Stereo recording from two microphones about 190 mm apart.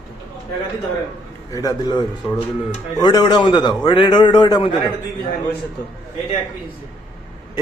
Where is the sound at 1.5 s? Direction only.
20° left (ahead or behind).